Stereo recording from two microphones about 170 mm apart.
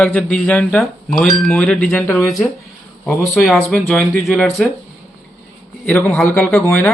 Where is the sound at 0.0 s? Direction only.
10° left (ahead or behind).